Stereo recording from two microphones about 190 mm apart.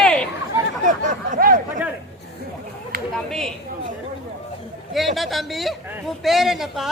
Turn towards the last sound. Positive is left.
turn(degrees=0)  # may be behind; listen again after turning